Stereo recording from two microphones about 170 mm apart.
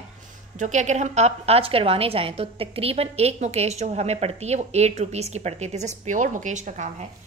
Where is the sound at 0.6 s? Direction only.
45° right (ahead or behind).